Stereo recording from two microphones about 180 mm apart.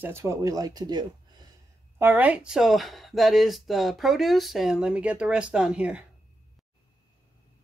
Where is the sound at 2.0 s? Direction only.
10° right (ahead or behind).